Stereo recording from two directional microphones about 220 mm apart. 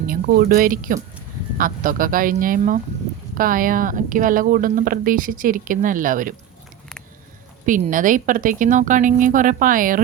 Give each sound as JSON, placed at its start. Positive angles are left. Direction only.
{"t": 0.1, "sound": "speech", "side_deg": -40}
{"t": 7.6, "sound": "speech", "side_deg": -35}